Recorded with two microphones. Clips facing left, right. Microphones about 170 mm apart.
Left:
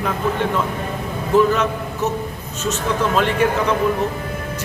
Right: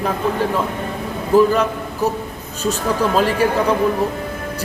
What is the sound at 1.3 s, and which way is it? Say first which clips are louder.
A man's voice: right 2 dB; 35° right (ahead or behind).